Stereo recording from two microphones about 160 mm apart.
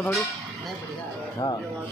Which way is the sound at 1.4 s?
20° left (ahead or behind).